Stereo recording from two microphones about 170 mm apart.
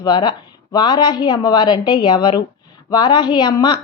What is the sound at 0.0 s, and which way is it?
A woman's voice, 25° left (ahead or behind).